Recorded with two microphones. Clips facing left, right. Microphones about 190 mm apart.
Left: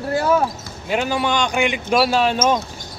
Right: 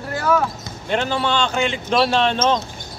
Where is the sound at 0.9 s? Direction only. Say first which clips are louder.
Left 1 dB; 10° left (ahead or behind).